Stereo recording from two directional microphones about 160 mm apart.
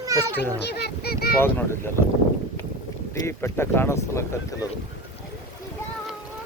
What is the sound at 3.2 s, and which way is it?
Speech, 15° left (ahead or behind).